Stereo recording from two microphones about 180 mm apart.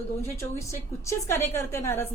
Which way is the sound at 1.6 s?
15° left (ahead or behind).